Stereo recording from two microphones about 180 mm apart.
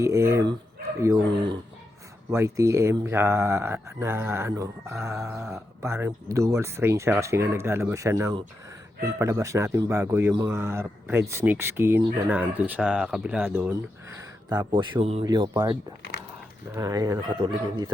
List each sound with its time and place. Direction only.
0.0 s speech: 15° right (ahead or behind)
2.3 s speech: 15° right (ahead or behind)
14.2 s a sound: 15° right (ahead or behind)
14.7 s speech: 30° right (ahead or behind)